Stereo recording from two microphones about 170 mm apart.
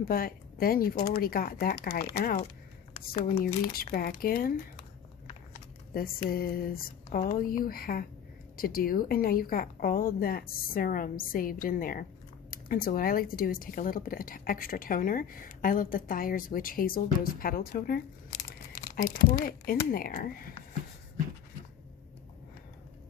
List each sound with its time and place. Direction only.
0.1 s a woman's voice: 60° left (ahead or behind)
2.9 s speech: 35° left (ahead or behind)
3.4 s a woman's voice: 50° left (ahead or behind)
6.3 s a woman's voice: 60° left (ahead or behind)